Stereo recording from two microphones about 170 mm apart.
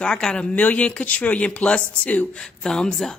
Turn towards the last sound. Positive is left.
turn(degrees=5)  # may be behind; listen again after turning